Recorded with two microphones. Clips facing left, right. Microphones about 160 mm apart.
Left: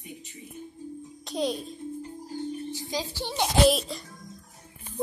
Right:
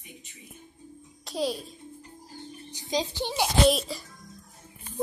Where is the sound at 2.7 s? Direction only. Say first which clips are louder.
Right 3 dB; 20° right (ahead or behind).